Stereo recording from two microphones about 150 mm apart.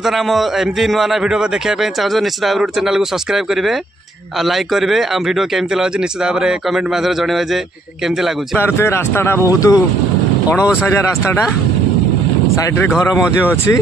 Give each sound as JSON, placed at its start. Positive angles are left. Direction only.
{"t": 0.0, "sound": "a man's voice", "side_deg": 0}
{"t": 4.5, "sound": "a man's voice", "side_deg": 0}
{"t": 8.5, "sound": "speech", "side_deg": 15}
{"t": 10.8, "sound": "speech", "side_deg": 15}
{"t": 13.0, "sound": "speech", "side_deg": 20}